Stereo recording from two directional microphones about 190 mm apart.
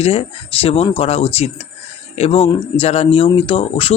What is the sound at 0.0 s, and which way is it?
Speech, 30° left (ahead or behind).